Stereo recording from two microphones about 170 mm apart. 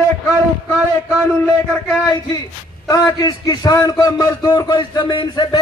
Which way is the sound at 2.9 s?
20° left (ahead or behind).